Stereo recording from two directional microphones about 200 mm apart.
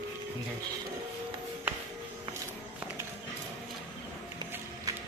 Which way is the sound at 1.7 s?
10° right (ahead or behind).